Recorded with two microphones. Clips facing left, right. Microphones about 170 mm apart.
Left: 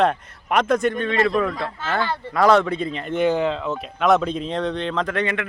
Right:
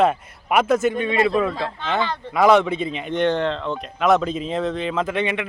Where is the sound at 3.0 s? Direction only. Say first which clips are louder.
Left 1 dB; 5° left (ahead or behind).